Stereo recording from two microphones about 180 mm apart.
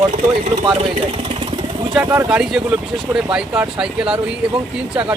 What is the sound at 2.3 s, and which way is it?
Speech, 5° right (ahead or behind).